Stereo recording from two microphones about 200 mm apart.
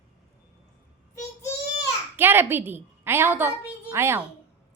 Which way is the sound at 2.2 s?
10° right (ahead or behind).